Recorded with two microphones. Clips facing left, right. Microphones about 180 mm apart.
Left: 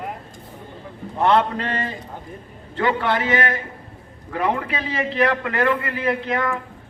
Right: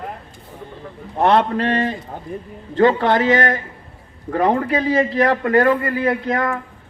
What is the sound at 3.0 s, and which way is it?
A man's voice, 45° right (ahead or behind).